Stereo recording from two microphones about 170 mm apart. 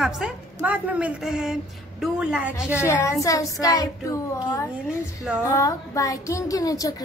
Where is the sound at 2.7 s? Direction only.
15° left (ahead or behind).